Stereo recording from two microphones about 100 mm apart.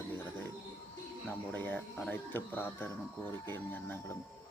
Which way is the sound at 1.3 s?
15° left (ahead or behind).